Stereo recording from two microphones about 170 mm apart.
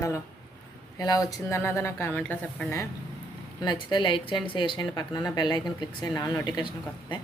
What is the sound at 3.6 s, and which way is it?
Speech, 25° left (ahead or behind).